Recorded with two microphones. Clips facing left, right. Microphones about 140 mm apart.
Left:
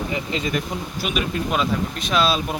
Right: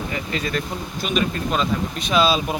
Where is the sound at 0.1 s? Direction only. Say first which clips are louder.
Even; 20° left (ahead or behind).